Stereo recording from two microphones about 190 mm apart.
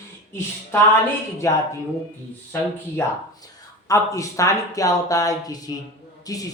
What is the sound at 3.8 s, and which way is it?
Speech, 15° left (ahead or behind).